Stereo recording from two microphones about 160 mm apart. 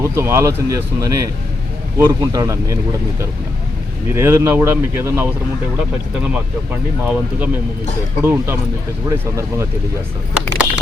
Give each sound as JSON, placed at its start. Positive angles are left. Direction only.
{"t": 0.0, "sound": "speech", "side_deg": -15}
{"t": 4.1, "sound": "speech", "side_deg": -15}
{"t": 7.1, "sound": "speech", "side_deg": -10}